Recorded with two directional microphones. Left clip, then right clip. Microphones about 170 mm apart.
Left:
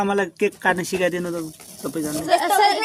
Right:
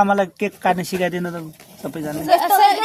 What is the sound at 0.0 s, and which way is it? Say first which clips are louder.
Speech: right 4 dB; 25° right (ahead or behind).